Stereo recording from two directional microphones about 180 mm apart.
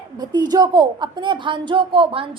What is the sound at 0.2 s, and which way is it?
A woman's voice, 25° right (ahead or behind).